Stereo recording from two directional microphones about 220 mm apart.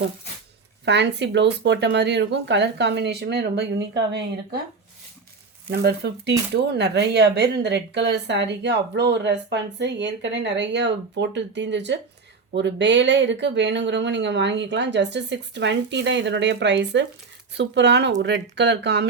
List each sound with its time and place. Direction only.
0.9 s speech: 50° right (ahead or behind)
5.7 s speech: 50° right (ahead or behind)